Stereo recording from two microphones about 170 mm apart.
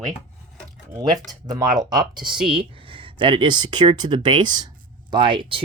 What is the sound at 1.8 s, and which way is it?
Speech, 25° right (ahead or behind).